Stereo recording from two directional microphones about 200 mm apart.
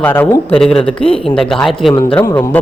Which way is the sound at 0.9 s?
30° left (ahead or behind).